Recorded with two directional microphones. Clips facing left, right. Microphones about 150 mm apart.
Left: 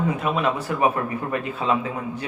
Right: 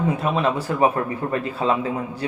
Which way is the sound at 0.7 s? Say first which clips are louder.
Right 2 dB; 30° right (ahead or behind).